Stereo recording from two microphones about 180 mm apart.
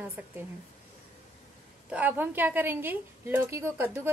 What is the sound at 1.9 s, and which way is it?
A woman's voice, 10° right (ahead or behind).